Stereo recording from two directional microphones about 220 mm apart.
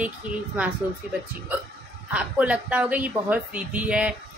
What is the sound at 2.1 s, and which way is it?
Speech, 5° right (ahead or behind).